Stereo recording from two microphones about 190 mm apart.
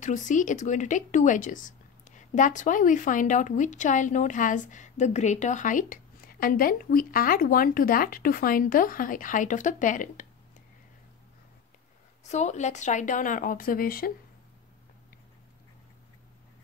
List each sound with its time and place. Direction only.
0.0 s a woman's voice: 40° left (ahead or behind)
12.3 s a woman's voice: 35° left (ahead or behind)